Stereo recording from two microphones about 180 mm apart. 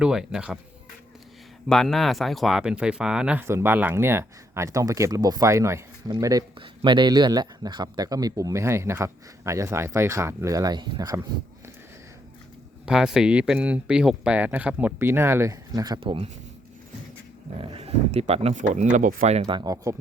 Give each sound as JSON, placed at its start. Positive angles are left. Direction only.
{"t": 0.0, "sound": "speech", "side_deg": -5}
{"t": 1.6, "sound": "a man's voice", "side_deg": 0}
{"t": 12.8, "sound": "speech", "side_deg": 0}
{"t": 17.6, "sound": "speech", "side_deg": -35}